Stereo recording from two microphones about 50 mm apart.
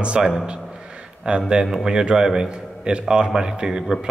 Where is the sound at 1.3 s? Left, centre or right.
Centre.